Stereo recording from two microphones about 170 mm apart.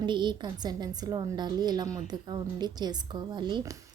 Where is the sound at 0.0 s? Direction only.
25° right (ahead or behind).